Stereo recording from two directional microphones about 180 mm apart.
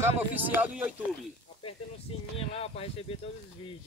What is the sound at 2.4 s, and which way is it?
Speech, 35° left (ahead or behind).